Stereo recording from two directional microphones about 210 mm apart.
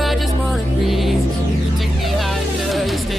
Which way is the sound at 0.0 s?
Centre (ahead or behind).